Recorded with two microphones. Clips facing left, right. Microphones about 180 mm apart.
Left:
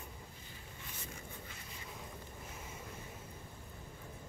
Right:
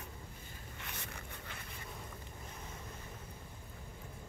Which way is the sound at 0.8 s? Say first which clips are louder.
Right 2 dB; 70° right (ahead or behind).